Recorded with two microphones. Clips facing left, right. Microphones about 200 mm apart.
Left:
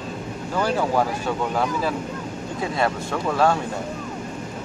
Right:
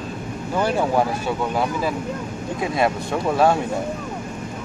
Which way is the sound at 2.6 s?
15° right (ahead or behind).